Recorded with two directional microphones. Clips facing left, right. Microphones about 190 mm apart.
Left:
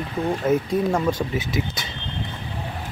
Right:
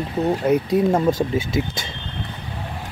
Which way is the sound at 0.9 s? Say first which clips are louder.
Right 4 dB; 25° right (ahead or behind).